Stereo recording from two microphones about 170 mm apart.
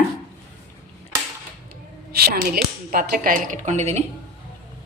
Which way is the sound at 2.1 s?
65° right (ahead or behind).